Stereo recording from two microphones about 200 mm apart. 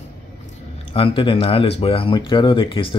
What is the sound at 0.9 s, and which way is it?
Speech, 25° left (ahead or behind).